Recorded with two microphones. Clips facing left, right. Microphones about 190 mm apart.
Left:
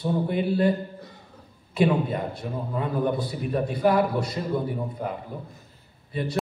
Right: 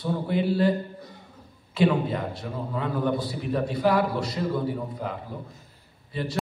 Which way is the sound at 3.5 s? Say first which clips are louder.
Left 1 dB; 20° left (ahead or behind).